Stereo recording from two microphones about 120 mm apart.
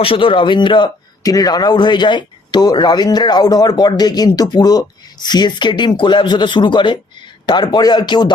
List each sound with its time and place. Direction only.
0.0 s speech: 45° left (ahead or behind)